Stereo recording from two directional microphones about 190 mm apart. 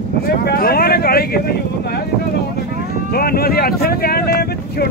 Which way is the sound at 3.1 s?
55° left (ahead or behind).